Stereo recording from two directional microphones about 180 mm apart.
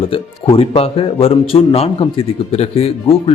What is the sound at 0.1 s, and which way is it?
Speech, 35° left (ahead or behind).